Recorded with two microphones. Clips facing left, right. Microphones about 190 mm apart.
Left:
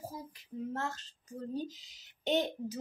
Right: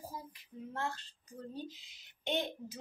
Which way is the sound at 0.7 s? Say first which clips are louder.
Left 1 dB; 40° left (ahead or behind).